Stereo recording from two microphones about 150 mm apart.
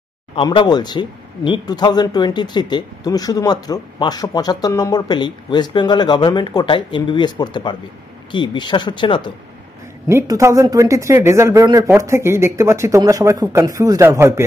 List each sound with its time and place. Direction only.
0.4 s speech: 35° left (ahead or behind)
10.0 s speech: 20° right (ahead or behind)